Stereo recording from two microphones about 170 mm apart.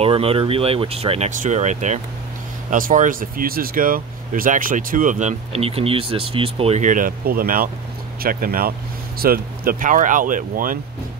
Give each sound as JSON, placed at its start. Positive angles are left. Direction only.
{"t": 0.0, "sound": "speech", "side_deg": -35}